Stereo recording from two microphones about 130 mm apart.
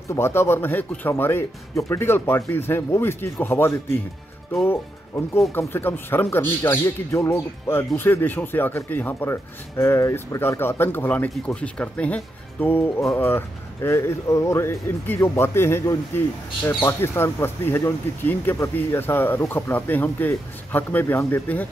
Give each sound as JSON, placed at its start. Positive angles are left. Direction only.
{"t": 0.1, "sound": "speech", "side_deg": 20}